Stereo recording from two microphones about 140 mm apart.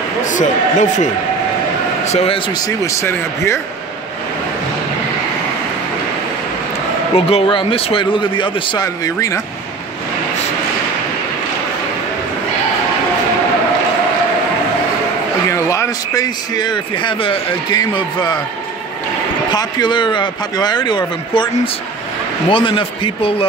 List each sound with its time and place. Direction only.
0.2 s speech: 60° left (ahead or behind)
2.0 s a man's voice: 45° left (ahead or behind)
2.6 s speech: 20° left (ahead or behind)
7.2 s speech: 45° left (ahead or behind)
8.8 s speech: 25° left (ahead or behind)
15.5 s speech: 20° left (ahead or behind)
19.5 s speech: 30° left (ahead or behind)
22.5 s speech: 35° left (ahead or behind)